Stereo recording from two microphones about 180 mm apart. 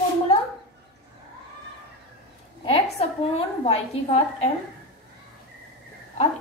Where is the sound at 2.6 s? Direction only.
30° left (ahead or behind).